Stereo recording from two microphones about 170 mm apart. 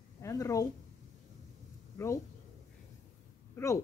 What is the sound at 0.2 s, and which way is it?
Speech, 20° left (ahead or behind).